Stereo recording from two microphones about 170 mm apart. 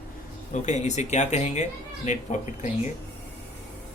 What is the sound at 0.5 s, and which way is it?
Speech, 40° left (ahead or behind).